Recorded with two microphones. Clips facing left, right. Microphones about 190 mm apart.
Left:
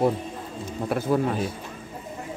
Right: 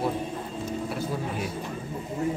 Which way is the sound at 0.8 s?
60° left (ahead or behind).